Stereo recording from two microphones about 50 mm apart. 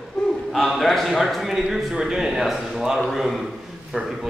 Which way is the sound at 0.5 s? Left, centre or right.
Centre.